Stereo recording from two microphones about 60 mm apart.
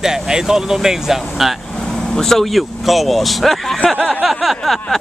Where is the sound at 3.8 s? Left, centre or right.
Centre.